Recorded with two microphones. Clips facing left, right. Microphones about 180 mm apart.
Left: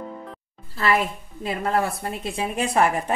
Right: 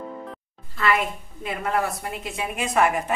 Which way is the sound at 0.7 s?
35° left (ahead or behind).